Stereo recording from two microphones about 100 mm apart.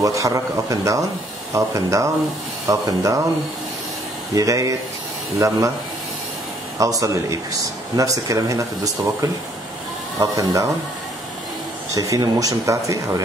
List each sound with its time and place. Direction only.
0.0 s speech: 35° right (ahead or behind)
4.3 s speech: 35° right (ahead or behind)
6.8 s speech: 35° right (ahead or behind)
11.9 s speech: 35° right (ahead or behind)